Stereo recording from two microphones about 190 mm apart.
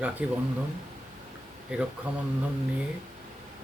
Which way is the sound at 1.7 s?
5° right (ahead or behind).